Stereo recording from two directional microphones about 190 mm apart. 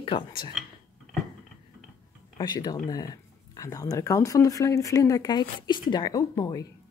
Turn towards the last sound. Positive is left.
turn(degrees=20)  # may be behind; listen again after turning